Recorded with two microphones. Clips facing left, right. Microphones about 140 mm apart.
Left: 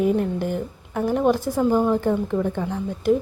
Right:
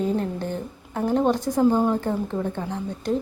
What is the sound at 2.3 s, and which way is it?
Speech, 15° right (ahead or behind).